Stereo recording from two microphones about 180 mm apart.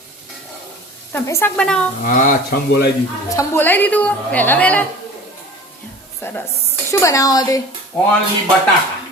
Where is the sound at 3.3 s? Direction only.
10° left (ahead or behind).